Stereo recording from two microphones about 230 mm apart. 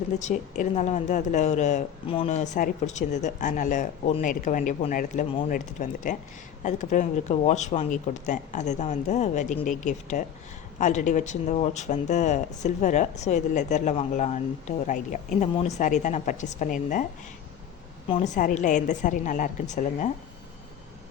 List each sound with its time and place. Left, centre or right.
0.2 s a woman's voice: left
18.1 s a woman's voice: left